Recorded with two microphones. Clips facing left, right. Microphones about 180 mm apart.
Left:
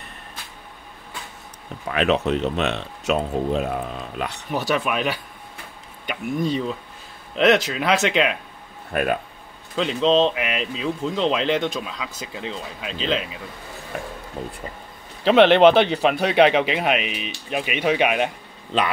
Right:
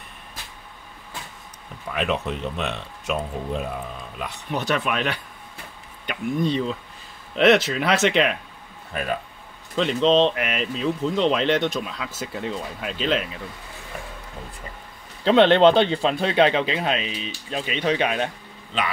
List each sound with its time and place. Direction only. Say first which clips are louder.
1.9 s speech: left 5 dB; 80° left
4.5 s speech: left 1 dB; 5° left (ahead or behind)
8.9 s speech: left 5 dB; 60° left (ahead or behind)
9.8 s speech: even; centre (ahead or behind)
15.2 s speech: left 2 dB; 15° left (ahead or behind)